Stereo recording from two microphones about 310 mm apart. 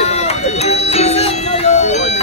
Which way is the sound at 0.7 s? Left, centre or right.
Centre.